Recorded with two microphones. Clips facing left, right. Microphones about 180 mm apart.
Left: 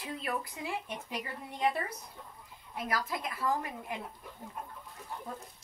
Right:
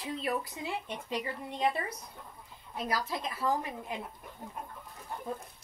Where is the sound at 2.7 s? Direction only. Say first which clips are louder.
Right 1 dB; 25° right (ahead or behind).